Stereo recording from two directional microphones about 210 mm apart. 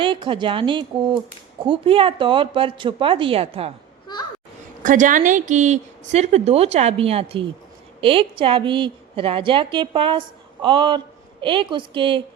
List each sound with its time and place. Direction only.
0.0 s a woman's voice: 25° right (ahead or behind)
4.0 s a sound: 20° left (ahead or behind)
4.8 s a woman's voice: 40° right (ahead or behind)